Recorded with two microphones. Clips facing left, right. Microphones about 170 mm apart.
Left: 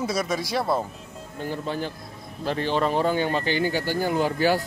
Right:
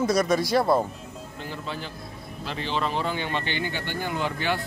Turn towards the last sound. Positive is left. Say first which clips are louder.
# left 6 dB
turn(degrees=40)  # may be behind; listen again after turning